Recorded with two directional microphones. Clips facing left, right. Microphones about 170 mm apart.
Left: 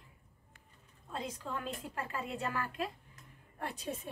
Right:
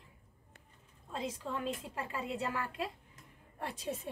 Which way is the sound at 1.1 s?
25° right (ahead or behind).